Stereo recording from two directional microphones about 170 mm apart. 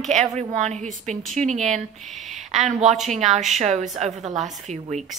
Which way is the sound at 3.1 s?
45° right (ahead or behind).